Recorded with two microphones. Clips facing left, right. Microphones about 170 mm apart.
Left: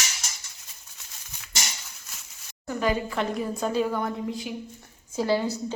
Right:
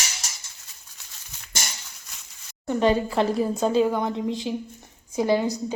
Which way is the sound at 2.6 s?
30° right (ahead or behind).